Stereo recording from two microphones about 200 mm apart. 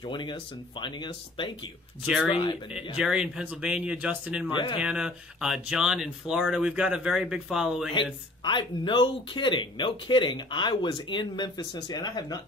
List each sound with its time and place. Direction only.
0.0 s speech: 25° left (ahead or behind)
2.0 s speech: 5° right (ahead or behind)
4.5 s speech: 25° left (ahead or behind)
4.7 s speech: 5° right (ahead or behind)
7.9 s speech: 25° left (ahead or behind)